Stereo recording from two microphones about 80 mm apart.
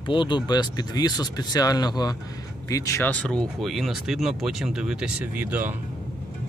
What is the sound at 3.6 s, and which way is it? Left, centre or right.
Speech, centre.